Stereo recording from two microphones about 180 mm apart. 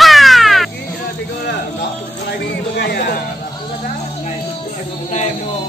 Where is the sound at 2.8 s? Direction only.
65° left (ahead or behind).